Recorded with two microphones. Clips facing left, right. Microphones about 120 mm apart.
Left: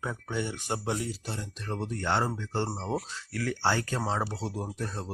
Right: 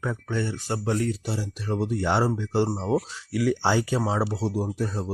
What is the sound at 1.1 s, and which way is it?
Speech, 5° right (ahead or behind).